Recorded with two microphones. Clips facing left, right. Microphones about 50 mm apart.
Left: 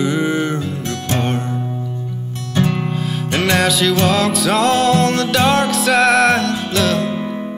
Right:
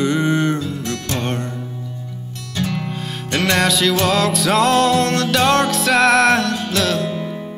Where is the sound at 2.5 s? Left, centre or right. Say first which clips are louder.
Left 5 dB; left.